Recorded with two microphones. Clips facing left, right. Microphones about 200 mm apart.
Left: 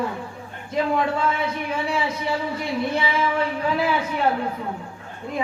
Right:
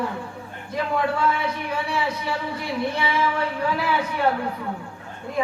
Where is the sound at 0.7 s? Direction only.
25° left (ahead or behind).